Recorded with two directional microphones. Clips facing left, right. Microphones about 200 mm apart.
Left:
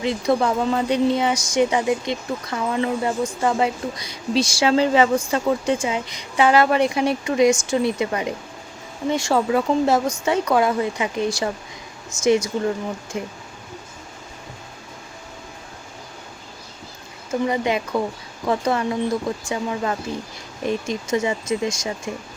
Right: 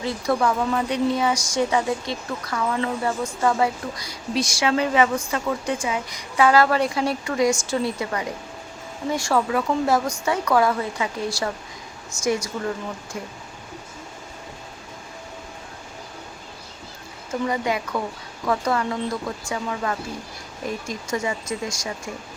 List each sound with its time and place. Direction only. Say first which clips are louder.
0.0 s speech: left 2 dB; 20° left (ahead or behind)
17.4 s speech: left 2 dB; 20° left (ahead or behind)